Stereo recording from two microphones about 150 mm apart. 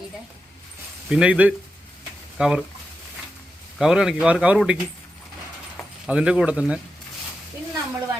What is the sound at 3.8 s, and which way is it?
Speech, 5° right (ahead or behind).